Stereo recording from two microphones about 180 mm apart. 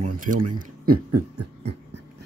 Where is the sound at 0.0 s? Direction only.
50° right (ahead or behind).